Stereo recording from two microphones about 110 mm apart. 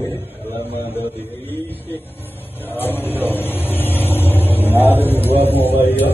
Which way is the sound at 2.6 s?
20° left (ahead or behind).